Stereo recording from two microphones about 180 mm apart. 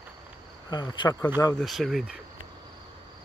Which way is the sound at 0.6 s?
25° left (ahead or behind).